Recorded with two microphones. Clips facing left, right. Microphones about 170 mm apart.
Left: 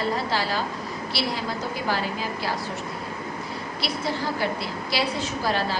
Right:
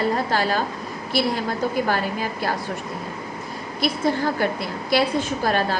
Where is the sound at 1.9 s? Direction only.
50° right (ahead or behind).